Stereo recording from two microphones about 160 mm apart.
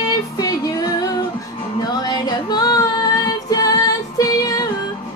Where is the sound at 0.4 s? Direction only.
25° left (ahead or behind).